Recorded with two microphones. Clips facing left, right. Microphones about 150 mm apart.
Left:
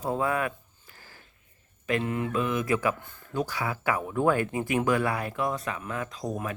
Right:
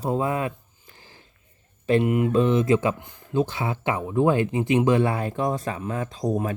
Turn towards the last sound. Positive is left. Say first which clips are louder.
# right 7 dB
turn(degrees=-30)  # may be behind; listen again after turning